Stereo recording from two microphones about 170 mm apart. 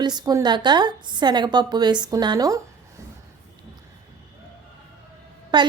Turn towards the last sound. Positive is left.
turn(degrees=-25)  # may be behind; listen again after turning